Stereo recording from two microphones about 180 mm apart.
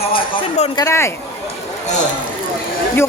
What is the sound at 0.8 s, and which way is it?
Speech, 15° left (ahead or behind).